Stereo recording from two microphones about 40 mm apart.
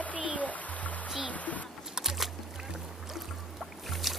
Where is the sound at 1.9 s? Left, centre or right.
Centre.